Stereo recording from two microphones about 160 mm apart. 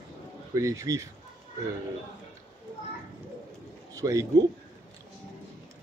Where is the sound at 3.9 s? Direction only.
20° right (ahead or behind).